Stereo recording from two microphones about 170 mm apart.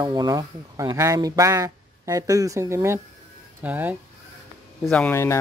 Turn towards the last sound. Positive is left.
turn(degrees=10)  # may be behind; listen again after turning